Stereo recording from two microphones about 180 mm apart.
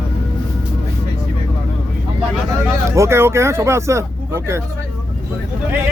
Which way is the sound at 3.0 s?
15° right (ahead or behind).